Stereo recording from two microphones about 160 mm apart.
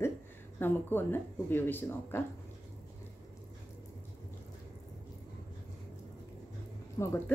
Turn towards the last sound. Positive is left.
turn(degrees=15)  # may be behind; listen again after turning